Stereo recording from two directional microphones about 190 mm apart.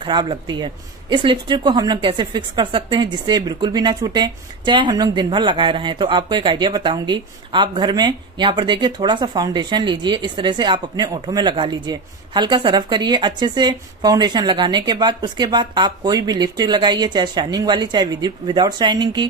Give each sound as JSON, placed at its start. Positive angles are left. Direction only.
{"t": 0.0, "sound": "a woman's voice", "side_deg": -25}